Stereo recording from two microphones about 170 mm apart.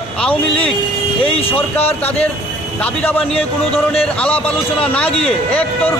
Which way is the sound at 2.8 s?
10° left (ahead or behind).